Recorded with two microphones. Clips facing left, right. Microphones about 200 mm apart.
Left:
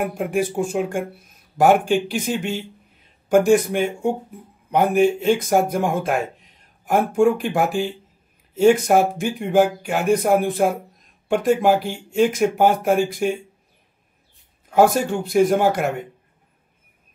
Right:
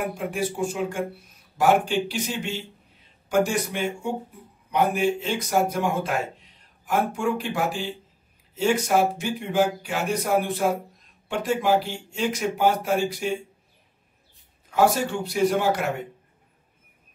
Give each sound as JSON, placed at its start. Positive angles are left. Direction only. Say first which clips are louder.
{"t": 0.3, "sound": "speech", "louder": "left 5 dB", "side_deg": 50}
{"t": 14.7, "sound": "speech", "louder": "left 5 dB", "side_deg": 50}